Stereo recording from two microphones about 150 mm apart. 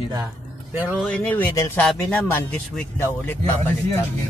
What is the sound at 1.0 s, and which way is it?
A man's voice, 10° left (ahead or behind).